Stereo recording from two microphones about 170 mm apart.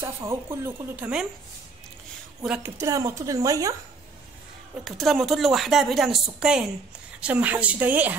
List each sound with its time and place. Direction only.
0.0 s speech: 15° right (ahead or behind)
2.4 s speech: 5° right (ahead or behind)
2.8 s speech: 20° right (ahead or behind)
4.8 s speech: centre (ahead or behind)